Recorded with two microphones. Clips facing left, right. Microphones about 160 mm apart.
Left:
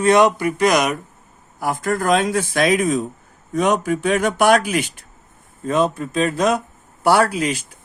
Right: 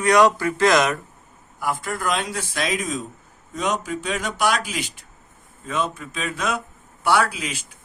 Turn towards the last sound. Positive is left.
turn(degrees=40)  # may be behind; listen again after turning